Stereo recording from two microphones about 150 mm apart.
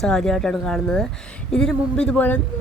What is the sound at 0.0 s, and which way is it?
Speech, 5° left (ahead or behind).